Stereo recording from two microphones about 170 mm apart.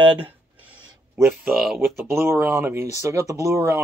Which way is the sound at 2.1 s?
15° right (ahead or behind).